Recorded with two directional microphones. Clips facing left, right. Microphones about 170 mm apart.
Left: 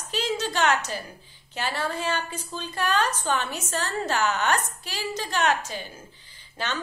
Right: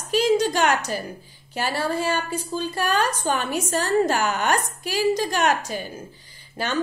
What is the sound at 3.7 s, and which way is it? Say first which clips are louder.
Speech: right 10 dB; 45° right (ahead or behind).